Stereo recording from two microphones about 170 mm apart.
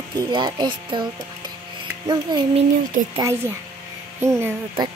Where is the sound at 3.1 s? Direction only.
20° right (ahead or behind).